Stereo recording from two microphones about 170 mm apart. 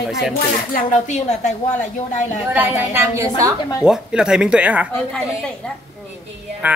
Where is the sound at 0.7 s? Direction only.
45° left (ahead or behind).